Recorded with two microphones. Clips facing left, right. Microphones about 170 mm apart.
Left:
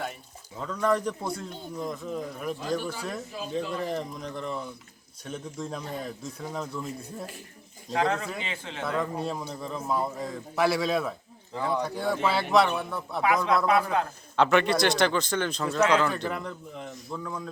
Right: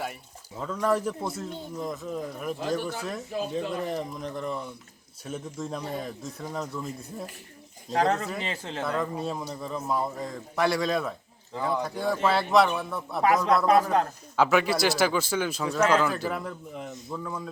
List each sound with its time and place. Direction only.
0.6 s a man's voice: 5° right (ahead or behind)
7.9 s speech: 40° right (ahead or behind)
8.8 s a man's voice: centre (ahead or behind)
13.2 s speech: 40° right (ahead or behind)
14.3 s a man's voice: 5° right (ahead or behind)